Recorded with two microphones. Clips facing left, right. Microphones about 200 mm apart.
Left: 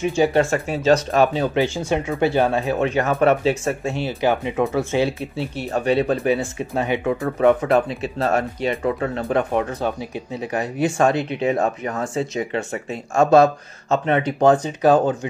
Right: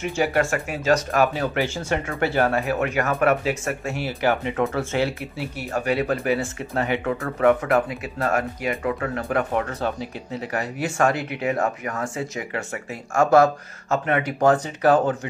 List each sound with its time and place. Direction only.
0.0 s speech: 20° left (ahead or behind)